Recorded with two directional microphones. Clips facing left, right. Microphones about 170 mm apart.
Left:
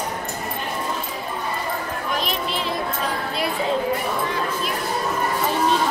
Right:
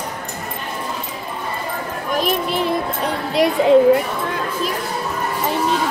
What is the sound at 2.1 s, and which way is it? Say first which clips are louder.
Speech: right 8 dB; 50° right (ahead or behind).